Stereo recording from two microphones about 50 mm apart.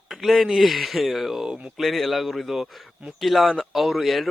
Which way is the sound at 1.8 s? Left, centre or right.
Centre.